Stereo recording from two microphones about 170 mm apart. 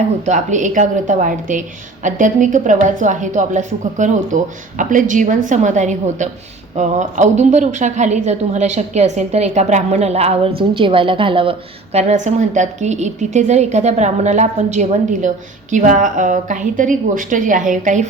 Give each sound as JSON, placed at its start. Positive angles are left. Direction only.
{"t": 0.3, "sound": "a woman's voice", "side_deg": -45}
{"t": 11.9, "sound": "a woman's voice", "side_deg": -45}